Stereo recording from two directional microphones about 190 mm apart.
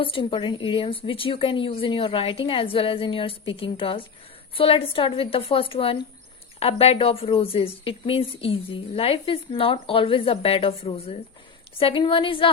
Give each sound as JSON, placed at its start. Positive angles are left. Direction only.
{"t": 0.0, "sound": "a woman's voice", "side_deg": 30}